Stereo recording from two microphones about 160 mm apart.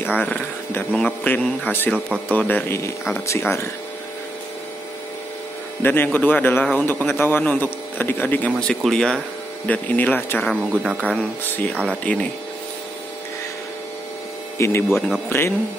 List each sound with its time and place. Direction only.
0.0 s a man's voice: 10° left (ahead or behind)
5.8 s a man's voice: 15° left (ahead or behind)
10.7 s speech: 5° right (ahead or behind)
11.0 s a man's voice: 10° left (ahead or behind)
14.6 s a man's voice: 15° left (ahead or behind)